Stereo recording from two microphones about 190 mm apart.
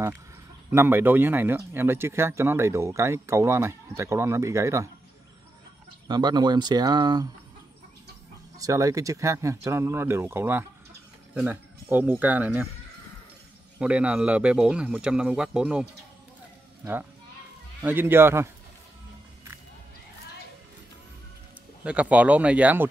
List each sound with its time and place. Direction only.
0.7 s speech: 10° right (ahead or behind)
6.0 s speech: 20° right (ahead or behind)
8.5 s speech: 15° right (ahead or behind)
13.7 s a man's voice: 5° right (ahead or behind)
21.8 s speech: 5° right (ahead or behind)